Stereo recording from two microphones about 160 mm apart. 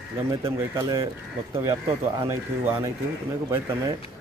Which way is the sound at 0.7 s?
20° right (ahead or behind).